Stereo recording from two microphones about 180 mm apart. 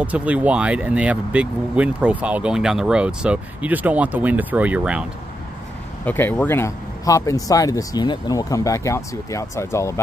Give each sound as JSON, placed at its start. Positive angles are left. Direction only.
{"t": 0.0, "sound": "speech", "side_deg": -10}
{"t": 6.0, "sound": "speech", "side_deg": 10}